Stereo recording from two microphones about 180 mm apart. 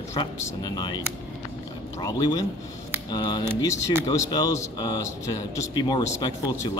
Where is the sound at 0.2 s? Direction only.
20° left (ahead or behind).